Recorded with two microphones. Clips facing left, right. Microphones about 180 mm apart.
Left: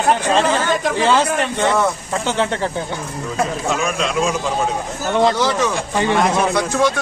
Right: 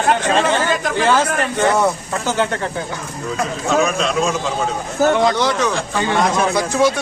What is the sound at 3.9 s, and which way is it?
Speech, 5° left (ahead or behind).